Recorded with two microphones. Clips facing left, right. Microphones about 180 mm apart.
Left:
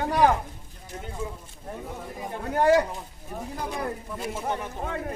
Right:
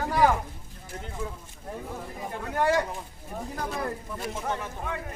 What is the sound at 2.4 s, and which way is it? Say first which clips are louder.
Speech: left 5 dB; 35° left (ahead or behind).